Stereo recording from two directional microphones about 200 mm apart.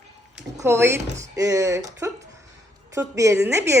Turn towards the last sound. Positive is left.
turn(degrees=-15)  # may be behind; listen again after turning